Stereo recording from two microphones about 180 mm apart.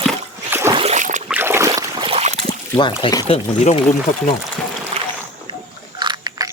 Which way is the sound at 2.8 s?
25° left (ahead or behind).